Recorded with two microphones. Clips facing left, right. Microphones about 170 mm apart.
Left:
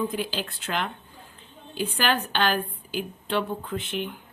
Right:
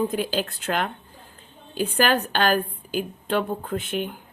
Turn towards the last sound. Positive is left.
turn(degrees=-45)  # may be behind; listen again after turning